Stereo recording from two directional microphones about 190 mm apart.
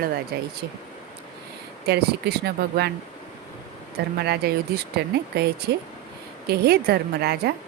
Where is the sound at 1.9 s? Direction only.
55° right (ahead or behind).